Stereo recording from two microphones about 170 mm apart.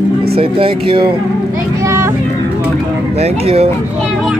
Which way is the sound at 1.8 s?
15° right (ahead or behind).